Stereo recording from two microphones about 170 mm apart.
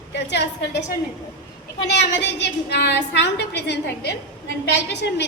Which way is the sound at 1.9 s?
90° left.